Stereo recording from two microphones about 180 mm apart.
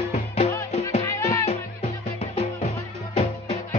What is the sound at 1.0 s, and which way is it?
Music, 15° left (ahead or behind).